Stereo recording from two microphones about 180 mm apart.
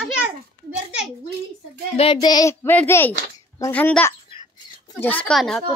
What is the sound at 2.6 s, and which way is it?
A child's voice, 10° left (ahead or behind).